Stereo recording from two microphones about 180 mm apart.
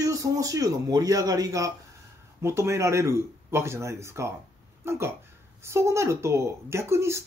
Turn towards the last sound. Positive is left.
turn(degrees=-15)  # may be behind; listen again after turning